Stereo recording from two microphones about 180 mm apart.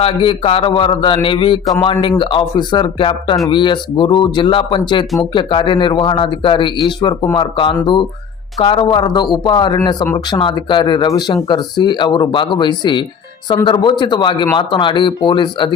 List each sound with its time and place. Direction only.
0.0 s speech: 30° left (ahead or behind)